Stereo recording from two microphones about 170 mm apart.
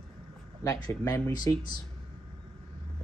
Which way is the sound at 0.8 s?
20° left (ahead or behind).